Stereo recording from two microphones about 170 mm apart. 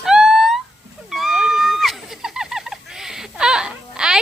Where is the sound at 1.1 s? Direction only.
Centre (ahead or behind).